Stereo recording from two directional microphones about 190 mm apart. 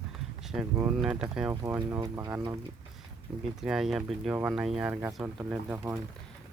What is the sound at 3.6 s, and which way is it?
Speech, centre (ahead or behind).